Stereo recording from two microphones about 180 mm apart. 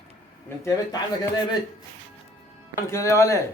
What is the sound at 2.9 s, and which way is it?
Speech, 15° left (ahead or behind).